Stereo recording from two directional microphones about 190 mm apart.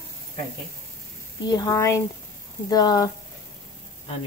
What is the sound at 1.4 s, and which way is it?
A woman's voice, 20° left (ahead or behind).